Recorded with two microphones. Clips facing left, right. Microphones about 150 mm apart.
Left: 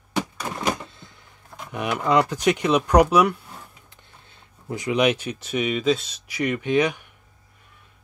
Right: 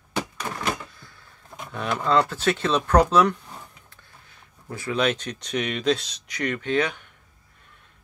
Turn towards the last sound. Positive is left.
turn(degrees=10)  # may be behind; listen again after turning